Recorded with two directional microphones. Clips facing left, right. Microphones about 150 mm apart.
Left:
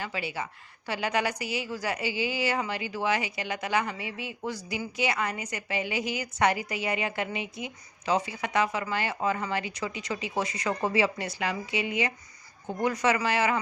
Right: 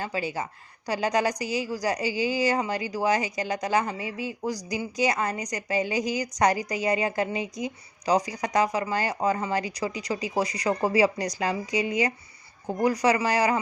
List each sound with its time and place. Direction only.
0.0 s a woman's voice: 40° right (ahead or behind)